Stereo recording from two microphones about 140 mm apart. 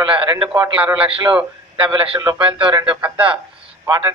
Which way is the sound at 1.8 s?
30° right (ahead or behind).